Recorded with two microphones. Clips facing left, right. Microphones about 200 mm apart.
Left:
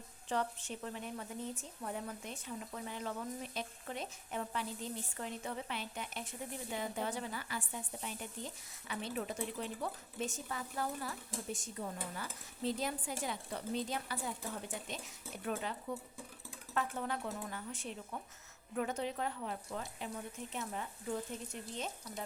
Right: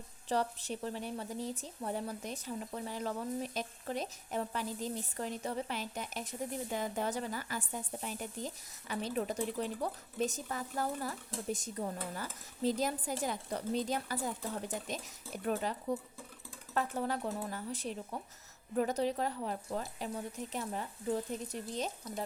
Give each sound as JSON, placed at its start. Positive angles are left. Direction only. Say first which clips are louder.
{"t": 0.3, "sound": "a woman's voice", "louder": "right 4 dB", "side_deg": -35}
{"t": 15.4, "sound": "a woman's voice", "louder": "right 5 dB", "side_deg": -40}